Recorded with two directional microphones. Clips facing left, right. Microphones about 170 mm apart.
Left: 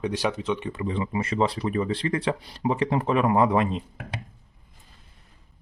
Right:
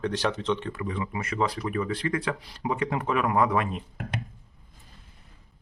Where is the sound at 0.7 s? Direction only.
25° left (ahead or behind).